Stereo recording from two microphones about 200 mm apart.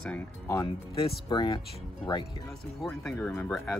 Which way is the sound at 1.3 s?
25° left (ahead or behind).